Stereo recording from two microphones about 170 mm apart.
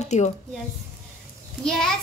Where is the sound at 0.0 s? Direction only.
40° left (ahead or behind).